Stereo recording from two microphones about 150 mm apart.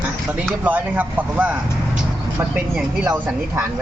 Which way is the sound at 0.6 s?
10° right (ahead or behind).